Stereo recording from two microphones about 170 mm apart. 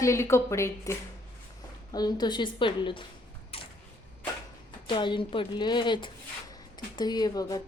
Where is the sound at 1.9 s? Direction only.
25° left (ahead or behind).